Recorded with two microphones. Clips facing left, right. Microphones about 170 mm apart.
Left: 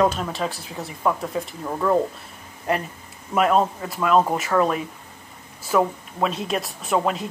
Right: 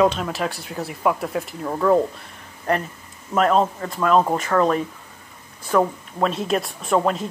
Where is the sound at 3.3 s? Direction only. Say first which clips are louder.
Right 1 dB; 5° left (ahead or behind).